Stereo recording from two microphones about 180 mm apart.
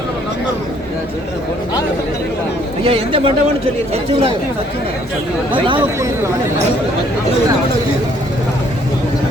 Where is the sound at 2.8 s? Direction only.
30° right (ahead or behind).